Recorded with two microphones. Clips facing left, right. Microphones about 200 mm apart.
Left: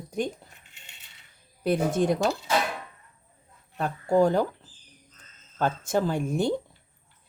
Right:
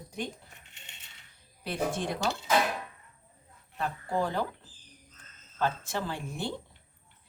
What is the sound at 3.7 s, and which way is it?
Speech, 45° left (ahead or behind).